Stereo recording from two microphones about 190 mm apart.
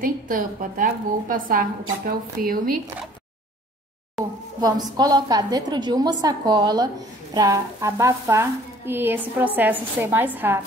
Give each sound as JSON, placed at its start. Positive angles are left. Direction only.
{"t": 0.0, "sound": "a woman's voice", "side_deg": -45}
{"t": 4.2, "sound": "a sound", "side_deg": 0}
{"t": 4.6, "sound": "a woman's voice", "side_deg": -20}